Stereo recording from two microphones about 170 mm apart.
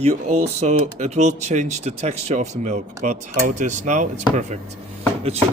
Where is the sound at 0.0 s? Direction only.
40° right (ahead or behind).